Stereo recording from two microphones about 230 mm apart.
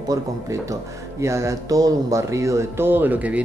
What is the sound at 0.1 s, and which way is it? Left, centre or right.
Speech, centre.